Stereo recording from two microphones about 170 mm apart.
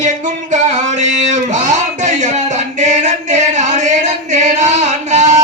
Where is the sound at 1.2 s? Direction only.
45° right (ahead or behind).